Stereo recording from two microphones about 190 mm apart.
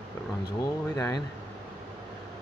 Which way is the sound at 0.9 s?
20° left (ahead or behind).